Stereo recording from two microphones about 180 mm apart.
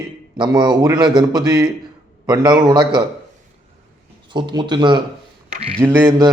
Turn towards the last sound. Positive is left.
turn(degrees=-15)  # may be behind; listen again after turning